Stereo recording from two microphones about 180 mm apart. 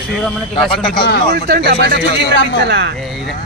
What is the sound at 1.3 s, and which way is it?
Speech, 60° right (ahead or behind).